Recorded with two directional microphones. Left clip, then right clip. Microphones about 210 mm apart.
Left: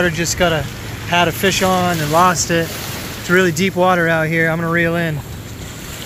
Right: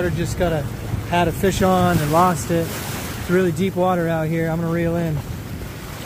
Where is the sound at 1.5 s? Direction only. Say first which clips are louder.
Left 2 dB; 15° right (ahead or behind).